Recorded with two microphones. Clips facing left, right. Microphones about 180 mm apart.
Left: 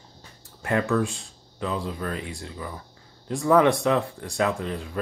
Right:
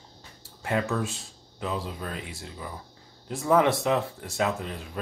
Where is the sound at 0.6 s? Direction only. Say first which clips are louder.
Left 4 dB; 20° right (ahead or behind).